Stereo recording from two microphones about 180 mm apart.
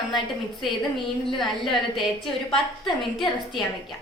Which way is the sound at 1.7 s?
Centre (ahead or behind).